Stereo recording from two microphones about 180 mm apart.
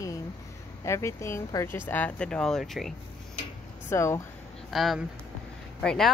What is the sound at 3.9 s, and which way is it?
Speech, 15° left (ahead or behind).